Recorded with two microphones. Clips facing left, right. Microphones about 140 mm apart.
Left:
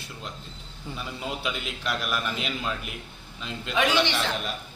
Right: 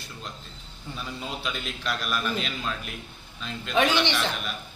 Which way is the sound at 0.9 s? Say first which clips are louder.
Left 1 dB; 15° left (ahead or behind).